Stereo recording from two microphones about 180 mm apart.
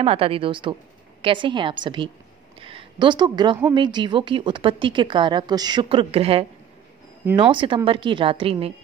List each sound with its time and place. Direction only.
0.0 s a woman's voice: 30° right (ahead or behind)
7.5 s speech: 30° right (ahead or behind)